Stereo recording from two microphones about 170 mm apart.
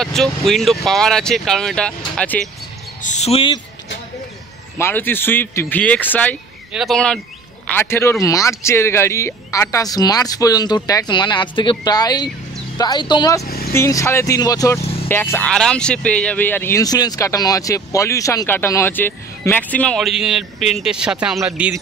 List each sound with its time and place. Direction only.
0.0 s speech: centre (ahead or behind)
3.0 s speech: 45° left (ahead or behind)
4.7 s speech: 15° left (ahead or behind)
6.7 s speech: centre (ahead or behind)